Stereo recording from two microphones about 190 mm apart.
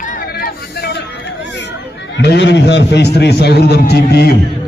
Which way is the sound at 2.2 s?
65° left (ahead or behind).